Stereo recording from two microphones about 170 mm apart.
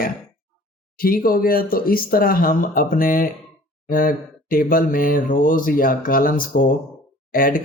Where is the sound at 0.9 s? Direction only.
60° left (ahead or behind).